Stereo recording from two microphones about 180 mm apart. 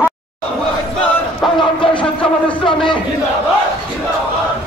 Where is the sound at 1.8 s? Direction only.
30° left (ahead or behind).